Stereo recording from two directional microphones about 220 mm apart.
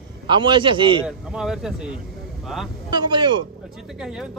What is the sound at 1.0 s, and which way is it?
Speech, 5° right (ahead or behind).